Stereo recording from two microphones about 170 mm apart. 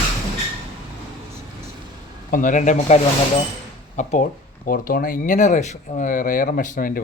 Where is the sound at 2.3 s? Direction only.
50° left (ahead or behind).